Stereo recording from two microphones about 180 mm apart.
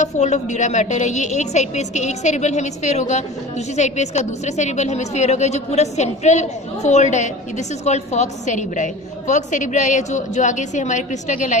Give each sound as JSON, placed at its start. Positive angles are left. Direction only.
{"t": 0.0, "sound": "a woman's voice", "side_deg": 40}